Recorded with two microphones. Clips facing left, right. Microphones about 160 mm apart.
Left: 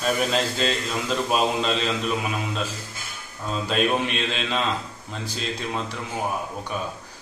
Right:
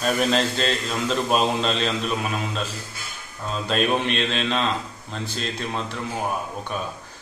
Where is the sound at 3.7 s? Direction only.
10° left (ahead or behind).